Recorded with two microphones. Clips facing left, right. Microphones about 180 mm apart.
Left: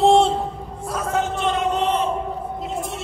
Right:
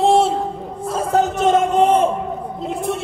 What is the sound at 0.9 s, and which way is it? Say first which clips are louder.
A man's voice: right 5 dB; 30° right (ahead or behind).